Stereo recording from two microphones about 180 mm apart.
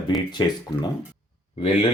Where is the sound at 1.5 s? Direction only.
35° left (ahead or behind).